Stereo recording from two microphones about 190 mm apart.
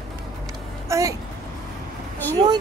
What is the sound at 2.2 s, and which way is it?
Speech, 10° left (ahead or behind).